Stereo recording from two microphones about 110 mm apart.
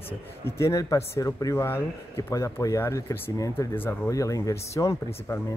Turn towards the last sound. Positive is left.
turn(degrees=30)  # may be behind; listen again after turning